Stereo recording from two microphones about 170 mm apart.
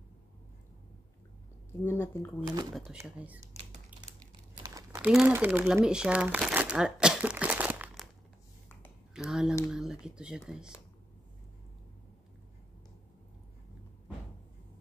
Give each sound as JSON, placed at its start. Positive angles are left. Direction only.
{"t": 1.7, "sound": "speech", "side_deg": 15}
{"t": 2.4, "sound": "speech", "side_deg": -20}
{"t": 2.7, "sound": "speech", "side_deg": 0}
{"t": 3.0, "sound": "speech", "side_deg": -10}
{"t": 4.6, "sound": "crumpling", "side_deg": -20}
{"t": 5.0, "sound": "speech", "side_deg": -10}
{"t": 9.1, "sound": "speech", "side_deg": -5}